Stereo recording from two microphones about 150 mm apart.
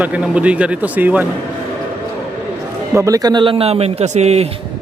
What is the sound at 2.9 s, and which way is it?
A man's voice, 20° right (ahead or behind).